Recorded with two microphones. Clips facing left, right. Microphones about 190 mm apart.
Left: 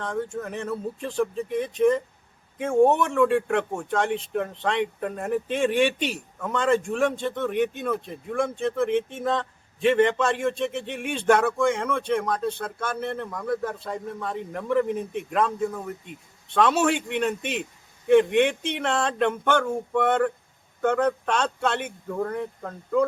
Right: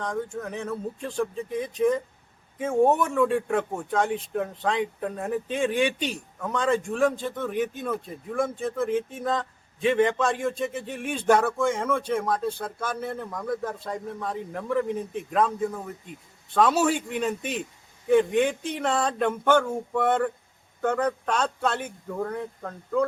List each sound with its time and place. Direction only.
0.0 s speech: centre (ahead or behind)